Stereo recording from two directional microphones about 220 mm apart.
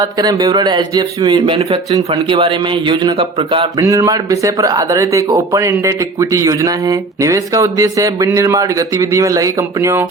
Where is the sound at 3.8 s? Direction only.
15° right (ahead or behind).